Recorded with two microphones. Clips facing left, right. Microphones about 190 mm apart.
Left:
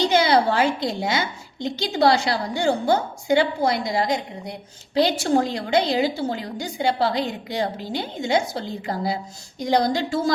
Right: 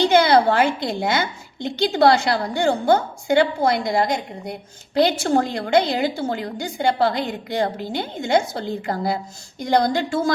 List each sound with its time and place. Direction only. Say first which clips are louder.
0.0 s a woman's voice: right 3 dB; 55° right (ahead or behind)